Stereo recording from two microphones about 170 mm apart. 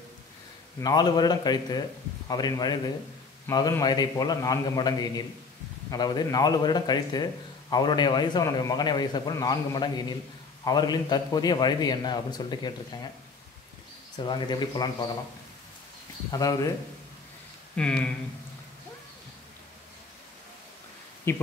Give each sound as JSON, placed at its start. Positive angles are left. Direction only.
{"t": 0.7, "sound": "a man's voice", "side_deg": 25}
{"t": 14.1, "sound": "a man's voice", "side_deg": 25}
{"t": 16.3, "sound": "a man's voice", "side_deg": 20}
{"t": 17.7, "sound": "speech", "side_deg": 5}
{"t": 21.3, "sound": "speech", "side_deg": 15}